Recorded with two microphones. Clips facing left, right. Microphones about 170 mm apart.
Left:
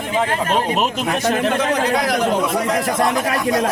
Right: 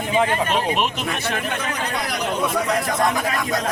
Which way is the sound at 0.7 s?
40° left (ahead or behind).